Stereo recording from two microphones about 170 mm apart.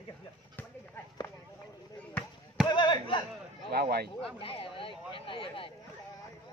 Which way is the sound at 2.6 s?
25° left (ahead or behind).